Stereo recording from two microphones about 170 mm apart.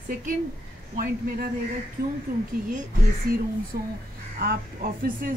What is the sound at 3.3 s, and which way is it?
Speech, 65° right (ahead or behind).